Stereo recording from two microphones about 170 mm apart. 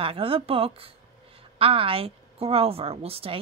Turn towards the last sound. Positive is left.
turn(degrees=-35)  # may be behind; listen again after turning